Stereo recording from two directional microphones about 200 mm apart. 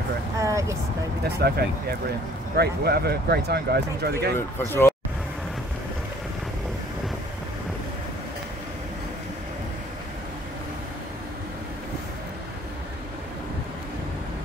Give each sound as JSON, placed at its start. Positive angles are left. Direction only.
{"t": 0.4, "sound": "vehicle", "side_deg": -15}
{"t": 1.4, "sound": "speech", "side_deg": -50}
{"t": 4.4, "sound": "speech", "side_deg": 10}